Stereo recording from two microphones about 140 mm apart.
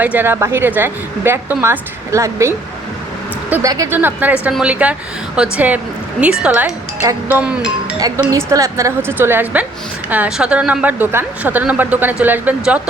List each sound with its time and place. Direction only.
0.0 s a woman's voice: 15° right (ahead or behind)
7.9 s a woman's voice: 25° right (ahead or behind); by 12.9 s 10° right (ahead or behind)